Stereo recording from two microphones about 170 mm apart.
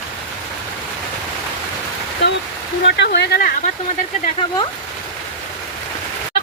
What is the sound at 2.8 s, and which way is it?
Speech, 90° left.